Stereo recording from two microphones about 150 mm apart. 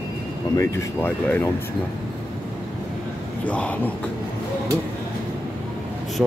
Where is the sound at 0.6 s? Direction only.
20° left (ahead or behind).